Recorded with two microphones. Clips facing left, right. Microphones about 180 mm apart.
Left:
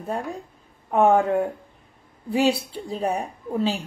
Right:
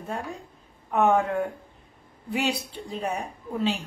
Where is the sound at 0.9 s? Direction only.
30° left (ahead or behind).